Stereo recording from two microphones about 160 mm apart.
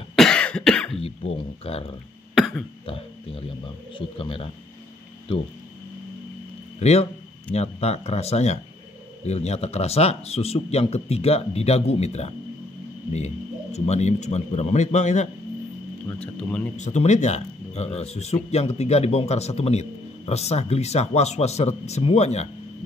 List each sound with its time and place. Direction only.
0.1 s cough: 5° left (ahead or behind)
0.9 s speech: 35° left (ahead or behind)
2.3 s cough: centre (ahead or behind)
4.2 s a man's voice: 35° left (ahead or behind)
6.8 s a man's voice: 40° left (ahead or behind)
16.2 s speech: 5° left (ahead or behind)
16.7 s speech: 45° left (ahead or behind)